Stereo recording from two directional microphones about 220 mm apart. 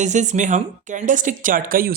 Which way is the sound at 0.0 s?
35° right (ahead or behind).